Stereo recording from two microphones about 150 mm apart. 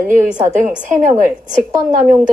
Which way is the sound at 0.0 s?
15° right (ahead or behind).